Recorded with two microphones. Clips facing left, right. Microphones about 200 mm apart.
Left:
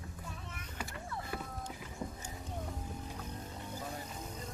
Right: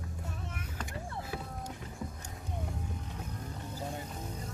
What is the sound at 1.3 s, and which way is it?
Music, centre (ahead or behind).